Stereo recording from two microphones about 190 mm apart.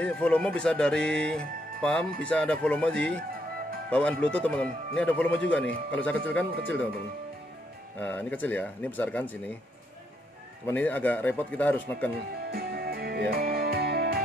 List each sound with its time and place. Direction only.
0.0 s speech: 5° left (ahead or behind)
8.0 s speech: 5° left (ahead or behind)
10.7 s speech: 10° left (ahead or behind)
12.4 s music: 55° right (ahead or behind)